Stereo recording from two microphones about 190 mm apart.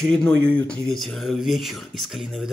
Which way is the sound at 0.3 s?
90° right.